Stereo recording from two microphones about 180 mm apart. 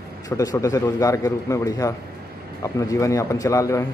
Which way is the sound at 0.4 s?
20° left (ahead or behind).